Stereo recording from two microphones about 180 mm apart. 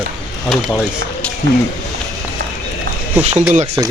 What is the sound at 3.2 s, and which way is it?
Speech, 10° right (ahead or behind).